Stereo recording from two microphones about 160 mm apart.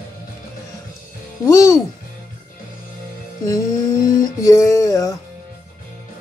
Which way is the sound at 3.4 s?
20° left (ahead or behind).